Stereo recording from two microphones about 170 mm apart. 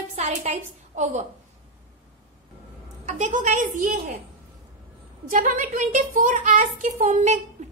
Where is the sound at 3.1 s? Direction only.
45° right (ahead or behind).